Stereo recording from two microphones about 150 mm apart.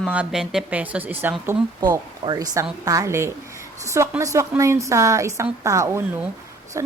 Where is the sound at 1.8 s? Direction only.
30° right (ahead or behind).